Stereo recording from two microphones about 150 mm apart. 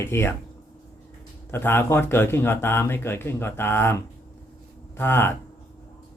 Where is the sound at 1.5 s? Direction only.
15° left (ahead or behind).